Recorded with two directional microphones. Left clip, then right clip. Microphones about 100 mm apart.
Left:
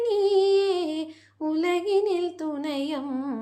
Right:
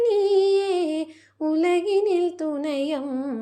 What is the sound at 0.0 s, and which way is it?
Female singing, 40° right (ahead or behind).